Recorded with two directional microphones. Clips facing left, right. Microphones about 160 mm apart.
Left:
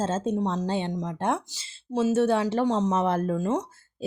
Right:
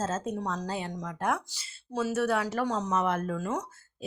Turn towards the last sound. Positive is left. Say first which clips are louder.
# left 5 dB
turn(degrees=25)  # may be behind; listen again after turning